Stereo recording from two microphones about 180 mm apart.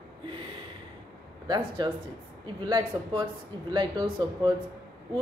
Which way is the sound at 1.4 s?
25° right (ahead or behind).